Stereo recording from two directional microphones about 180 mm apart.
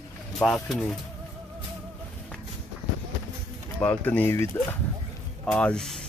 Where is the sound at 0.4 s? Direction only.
5° left (ahead or behind).